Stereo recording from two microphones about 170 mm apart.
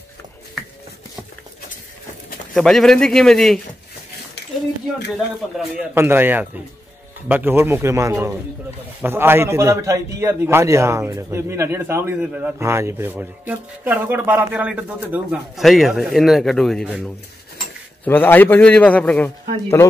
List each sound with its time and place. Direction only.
2.5 s a man's voice: centre (ahead or behind)
5.9 s a man's voice: 10° right (ahead or behind)
18.0 s a man's voice: 10° left (ahead or behind)